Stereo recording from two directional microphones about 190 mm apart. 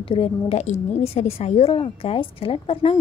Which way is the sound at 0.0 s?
30° left (ahead or behind).